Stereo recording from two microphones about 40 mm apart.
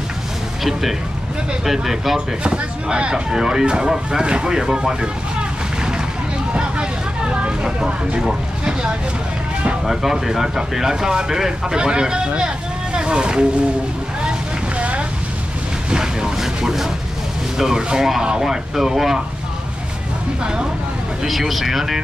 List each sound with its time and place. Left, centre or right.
0.7 s speech: centre
2.1 s speech: right
6.5 s vehicle: right
7.6 s speech: right
12.9 s boat: right
14.8 s a sound: right
15.9 s vehicle: centre
17.6 s speech: centre
21.2 s speech: centre